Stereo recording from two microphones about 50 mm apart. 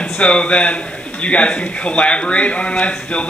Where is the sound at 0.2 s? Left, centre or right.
Left.